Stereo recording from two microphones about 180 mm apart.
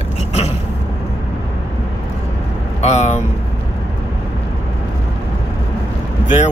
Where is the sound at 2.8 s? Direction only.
40° left (ahead or behind).